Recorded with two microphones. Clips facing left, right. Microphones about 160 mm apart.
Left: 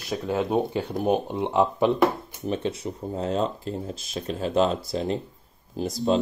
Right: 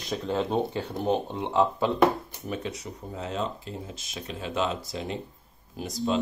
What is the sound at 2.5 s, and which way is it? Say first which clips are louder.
Speech: left 6 dB; 30° left (ahead or behind).